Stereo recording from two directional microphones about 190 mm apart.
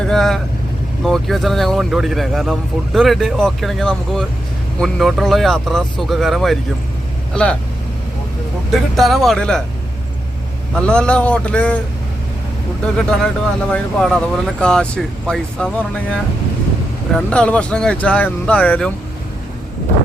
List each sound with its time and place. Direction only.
0.0 s speech: 5° left (ahead or behind)
9.0 s speech: centre (ahead or behind)
10.8 s speech: 5° left (ahead or behind)
13.1 s speech: 5° left (ahead or behind)